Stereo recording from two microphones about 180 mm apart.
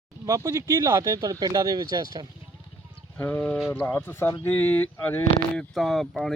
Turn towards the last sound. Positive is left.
turn(degrees=0)  # may be behind; listen again after turning